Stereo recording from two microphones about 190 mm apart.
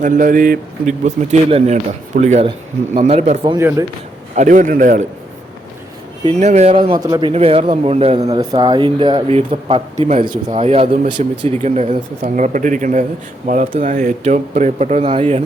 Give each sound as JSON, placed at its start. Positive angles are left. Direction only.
{"t": 0.0, "sound": "speech", "side_deg": -45}
{"t": 3.5, "sound": "speech", "side_deg": -15}
{"t": 4.4, "sound": "speech", "side_deg": -45}
{"t": 6.2, "sound": "speech", "side_deg": -35}
{"t": 10.2, "sound": "speech", "side_deg": -40}